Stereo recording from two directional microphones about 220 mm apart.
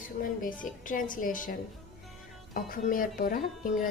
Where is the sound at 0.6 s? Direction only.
35° left (ahead or behind).